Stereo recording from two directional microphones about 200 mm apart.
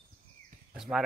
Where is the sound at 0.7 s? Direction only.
5° right (ahead or behind).